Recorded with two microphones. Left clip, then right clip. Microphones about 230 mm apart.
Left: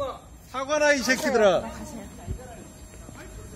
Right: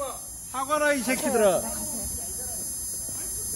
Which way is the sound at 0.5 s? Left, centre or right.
Right.